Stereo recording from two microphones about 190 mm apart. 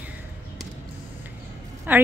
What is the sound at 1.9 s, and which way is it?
Speech, 10° right (ahead or behind).